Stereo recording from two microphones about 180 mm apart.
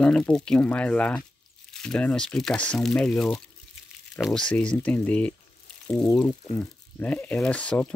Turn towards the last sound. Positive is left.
turn(degrees=5)  # may be behind; listen again after turning